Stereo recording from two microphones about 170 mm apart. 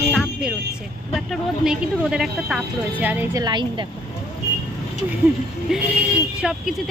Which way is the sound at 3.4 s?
25° right (ahead or behind).